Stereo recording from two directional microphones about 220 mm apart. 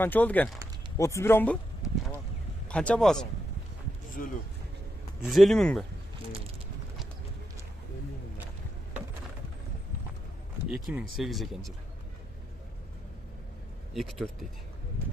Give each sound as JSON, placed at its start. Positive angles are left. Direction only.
{"t": 0.0, "sound": "speech", "side_deg": 10}
{"t": 4.2, "sound": "speech", "side_deg": 40}
{"t": 5.2, "sound": "speech", "side_deg": 0}
{"t": 10.7, "sound": "speech", "side_deg": -5}
{"t": 13.9, "sound": "speech", "side_deg": 0}